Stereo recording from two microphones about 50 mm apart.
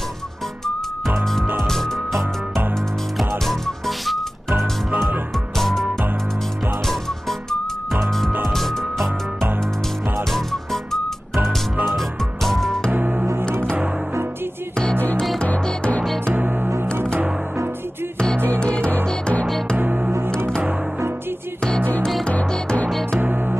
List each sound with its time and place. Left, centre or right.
1.6 s music: centre
3.4 s music: centre
4.5 s music: right
5.6 s music: centre
8.3 s music: right
8.5 s music: centre
10.3 s music: centre
12.9 s music: right
16.3 s music: right
18.6 s music: centre
19.8 s music: right
23.2 s music: right